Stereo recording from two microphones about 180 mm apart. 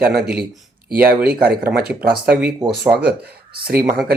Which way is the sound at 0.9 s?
55° right (ahead or behind).